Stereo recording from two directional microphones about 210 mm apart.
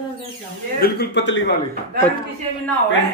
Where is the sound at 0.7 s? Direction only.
50° left (ahead or behind).